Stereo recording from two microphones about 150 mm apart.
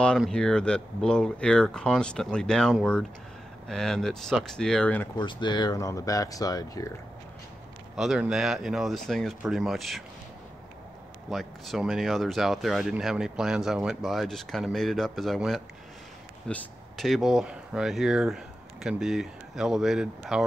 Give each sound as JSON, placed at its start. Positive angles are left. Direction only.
{"t": 0.0, "sound": "speech", "side_deg": 5}
{"t": 5.1, "sound": "speech", "side_deg": 30}
{"t": 7.9, "sound": "speech", "side_deg": 0}
{"t": 11.2, "sound": "speech", "side_deg": 0}